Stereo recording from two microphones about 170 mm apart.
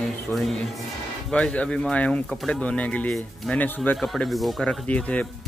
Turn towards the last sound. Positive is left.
turn(degrees=10)  # may be behind; listen again after turning